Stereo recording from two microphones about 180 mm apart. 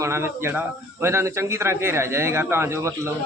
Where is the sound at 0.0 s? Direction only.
15° right (ahead or behind).